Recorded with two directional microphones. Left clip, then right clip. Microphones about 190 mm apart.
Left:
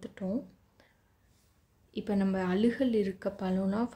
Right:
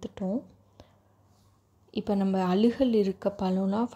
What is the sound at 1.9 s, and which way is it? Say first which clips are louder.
A woman's voice: right 4 dB; 20° right (ahead or behind).